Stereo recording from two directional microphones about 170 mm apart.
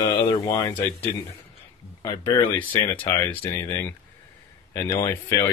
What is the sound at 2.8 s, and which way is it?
Speech, 15° left (ahead or behind).